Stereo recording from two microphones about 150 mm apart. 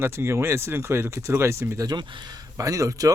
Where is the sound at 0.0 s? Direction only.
15° right (ahead or behind).